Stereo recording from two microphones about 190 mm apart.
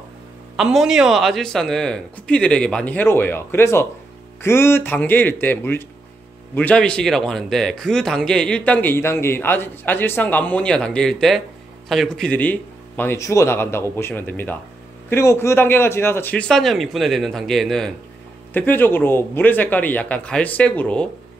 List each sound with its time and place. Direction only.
0.6 s a man's voice: centre (ahead or behind)